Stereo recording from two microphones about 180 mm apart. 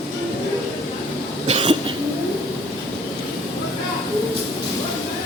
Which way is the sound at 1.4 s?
30° right (ahead or behind).